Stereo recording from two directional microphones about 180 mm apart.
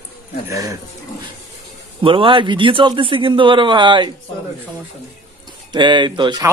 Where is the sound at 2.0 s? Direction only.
30° right (ahead or behind).